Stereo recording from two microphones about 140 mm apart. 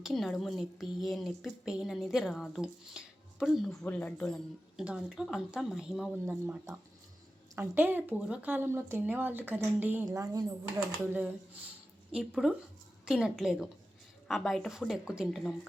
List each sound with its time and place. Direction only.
0.0 s a woman's voice: centre (ahead or behind)
3.8 s speech: 10° left (ahead or behind)
4.8 s a woman's voice: 5° right (ahead or behind)
6.2 s speech: 15° right (ahead or behind)
10.1 s a woman's voice: 25° right (ahead or behind)
11.0 s a woman's voice: 10° right (ahead or behind)